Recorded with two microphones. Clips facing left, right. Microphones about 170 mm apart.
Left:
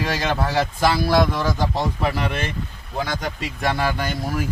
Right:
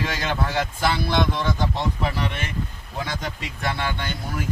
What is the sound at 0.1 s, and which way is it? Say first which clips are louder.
Speech: left 3 dB; 40° left (ahead or behind).